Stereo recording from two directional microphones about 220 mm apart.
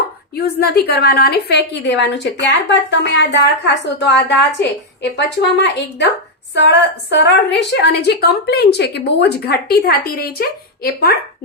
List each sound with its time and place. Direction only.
0.4 s a woman's voice: 45° left (ahead or behind)